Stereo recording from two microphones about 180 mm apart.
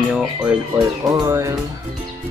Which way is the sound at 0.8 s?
20° right (ahead or behind).